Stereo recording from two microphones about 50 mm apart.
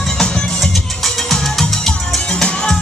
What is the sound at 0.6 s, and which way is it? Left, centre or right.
Music, centre.